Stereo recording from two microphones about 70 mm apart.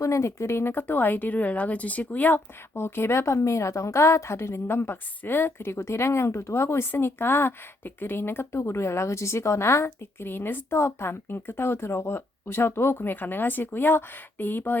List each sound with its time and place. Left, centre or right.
0.0 s speech: left
2.7 s a woman's voice: left